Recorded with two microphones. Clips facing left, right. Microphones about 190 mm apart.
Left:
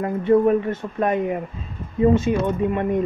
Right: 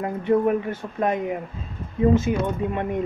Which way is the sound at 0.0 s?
15° right (ahead or behind).